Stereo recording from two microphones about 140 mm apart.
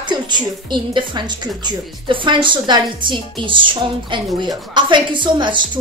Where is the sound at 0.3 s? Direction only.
35° right (ahead or behind).